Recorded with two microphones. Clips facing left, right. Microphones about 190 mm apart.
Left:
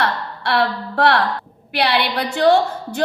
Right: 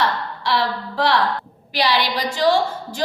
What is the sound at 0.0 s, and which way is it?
A woman's voice, 60° left (ahead or behind).